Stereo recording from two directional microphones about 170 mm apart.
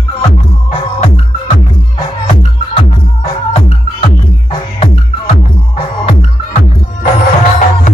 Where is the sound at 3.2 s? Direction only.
35° left (ahead or behind).